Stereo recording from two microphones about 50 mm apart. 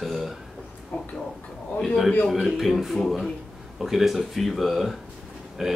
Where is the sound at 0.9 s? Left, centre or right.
Left.